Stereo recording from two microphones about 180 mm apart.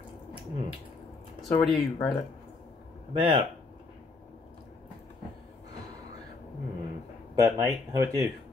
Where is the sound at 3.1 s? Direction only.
25° right (ahead or behind).